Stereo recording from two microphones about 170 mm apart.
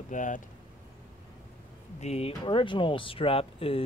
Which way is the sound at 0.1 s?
50° left (ahead or behind).